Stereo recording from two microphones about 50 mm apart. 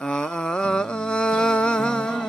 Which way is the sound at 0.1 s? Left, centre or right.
Centre.